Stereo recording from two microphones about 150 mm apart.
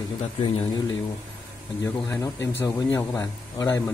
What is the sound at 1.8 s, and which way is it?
Speech, 20° left (ahead or behind).